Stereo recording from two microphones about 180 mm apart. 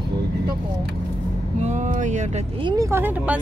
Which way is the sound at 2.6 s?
15° right (ahead or behind).